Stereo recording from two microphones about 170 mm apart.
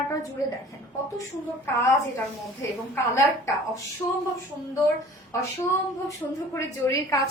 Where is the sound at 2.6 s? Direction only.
15° left (ahead or behind).